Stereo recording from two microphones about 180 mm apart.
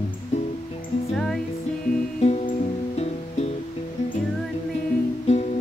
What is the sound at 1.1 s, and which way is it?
Music, 5° left (ahead or behind).